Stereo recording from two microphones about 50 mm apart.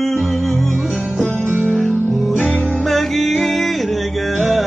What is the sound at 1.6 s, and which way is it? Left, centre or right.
Music, centre.